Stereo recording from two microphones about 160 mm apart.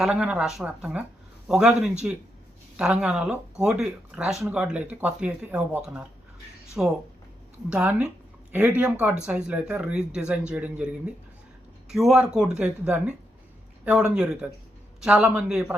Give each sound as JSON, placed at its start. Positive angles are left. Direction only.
{"t": 0.0, "sound": "speech", "side_deg": -5}